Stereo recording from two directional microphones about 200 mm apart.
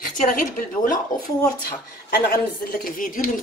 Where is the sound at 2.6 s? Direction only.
45° left (ahead or behind).